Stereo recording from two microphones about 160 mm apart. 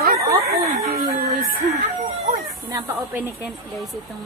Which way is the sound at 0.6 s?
40° right (ahead or behind).